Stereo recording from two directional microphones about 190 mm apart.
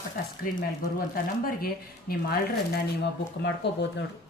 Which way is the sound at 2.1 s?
55° left (ahead or behind).